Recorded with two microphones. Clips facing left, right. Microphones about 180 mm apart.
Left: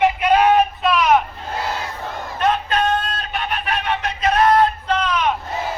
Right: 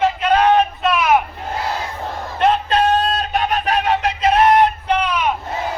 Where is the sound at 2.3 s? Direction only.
30° right (ahead or behind).